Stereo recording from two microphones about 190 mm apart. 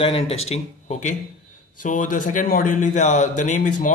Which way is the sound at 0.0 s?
30° left (ahead or behind).